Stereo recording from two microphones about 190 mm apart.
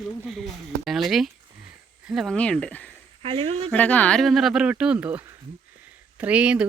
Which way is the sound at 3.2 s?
30° right (ahead or behind).